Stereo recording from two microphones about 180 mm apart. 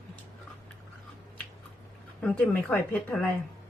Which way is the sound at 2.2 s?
5° left (ahead or behind).